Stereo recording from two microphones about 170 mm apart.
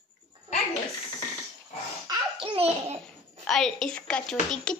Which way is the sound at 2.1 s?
30° right (ahead or behind).